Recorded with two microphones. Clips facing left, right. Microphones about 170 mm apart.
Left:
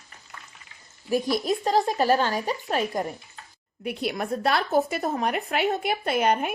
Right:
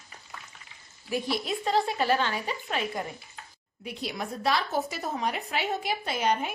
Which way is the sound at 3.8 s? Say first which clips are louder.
Left 6 dB; 60° left (ahead or behind).